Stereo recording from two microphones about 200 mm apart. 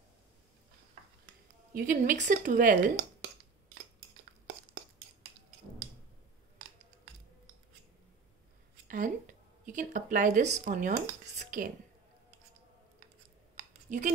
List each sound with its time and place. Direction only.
1.7 s speech: 45° right (ahead or behind)
8.8 s a sound: 40° right (ahead or behind)
9.7 s speech: 40° right (ahead or behind)
13.8 s speech: 40° right (ahead or behind)